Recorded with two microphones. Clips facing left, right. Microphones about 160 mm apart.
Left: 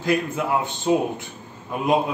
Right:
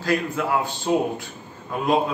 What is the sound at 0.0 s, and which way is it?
A man's voice, 20° left (ahead or behind).